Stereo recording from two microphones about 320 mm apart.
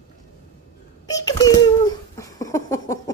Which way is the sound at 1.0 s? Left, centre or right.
Centre.